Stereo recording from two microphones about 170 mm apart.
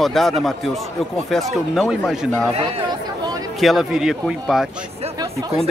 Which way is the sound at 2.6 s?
35° right (ahead or behind).